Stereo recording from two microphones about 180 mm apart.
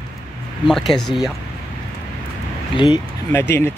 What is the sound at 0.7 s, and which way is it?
Speech, centre (ahead or behind).